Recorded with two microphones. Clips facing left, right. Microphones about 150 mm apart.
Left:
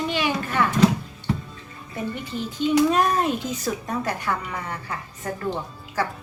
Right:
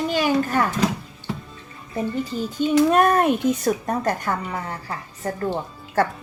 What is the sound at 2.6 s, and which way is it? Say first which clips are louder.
Speech: right 2 dB; 50° right (ahead or behind).